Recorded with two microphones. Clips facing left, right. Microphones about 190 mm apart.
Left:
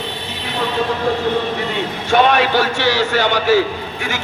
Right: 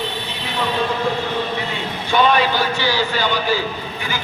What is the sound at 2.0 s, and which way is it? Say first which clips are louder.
A man's voice: left 2 dB; 75° left (ahead or behind).